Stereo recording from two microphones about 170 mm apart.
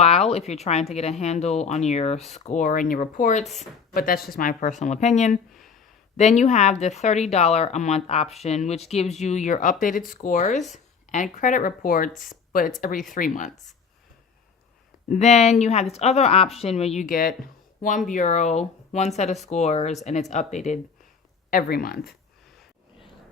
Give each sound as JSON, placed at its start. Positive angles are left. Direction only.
{"t": 0.0, "sound": "speech", "side_deg": 40}
{"t": 15.1, "sound": "speech", "side_deg": 40}
{"t": 17.1, "sound": "speech", "side_deg": 60}
{"t": 18.1, "sound": "speech", "side_deg": 45}
{"t": 21.5, "sound": "speech", "side_deg": 60}